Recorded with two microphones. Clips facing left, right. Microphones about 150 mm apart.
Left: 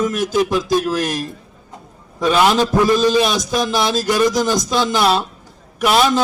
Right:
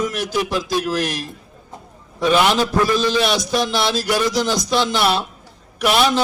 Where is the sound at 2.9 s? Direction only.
45° left (ahead or behind).